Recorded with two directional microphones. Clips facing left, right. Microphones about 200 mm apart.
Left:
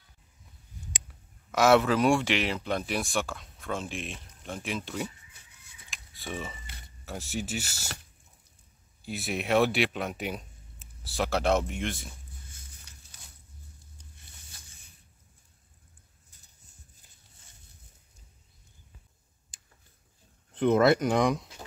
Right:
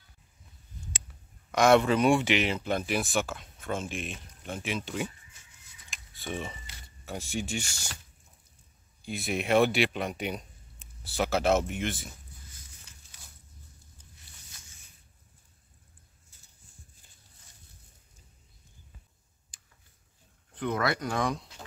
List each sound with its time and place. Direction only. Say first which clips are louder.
1.5 s speech: even; 5° left (ahead or behind)
5.9 s a sound: right 1 dB; centre (ahead or behind)
7.1 s speech: even; centre (ahead or behind)
9.0 s speech: right 1 dB; centre (ahead or behind)
19.5 s tick-tock: left 1 dB; 20° left (ahead or behind)
20.5 s speech: left 8 dB; 25° left (ahead or behind)